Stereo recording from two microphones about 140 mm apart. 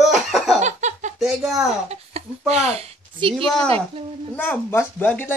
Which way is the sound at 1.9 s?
50° right (ahead or behind).